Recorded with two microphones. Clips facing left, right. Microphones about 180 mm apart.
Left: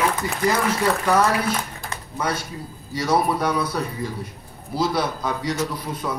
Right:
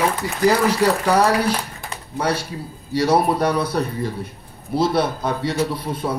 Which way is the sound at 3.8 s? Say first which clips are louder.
Right 4 dB; 65° right (ahead or behind).